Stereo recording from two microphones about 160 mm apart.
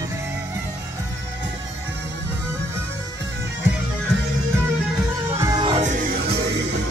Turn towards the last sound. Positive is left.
turn(degrees=-55)  # may be behind; listen again after turning